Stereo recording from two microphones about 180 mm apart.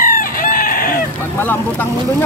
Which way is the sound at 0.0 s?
50° left (ahead or behind).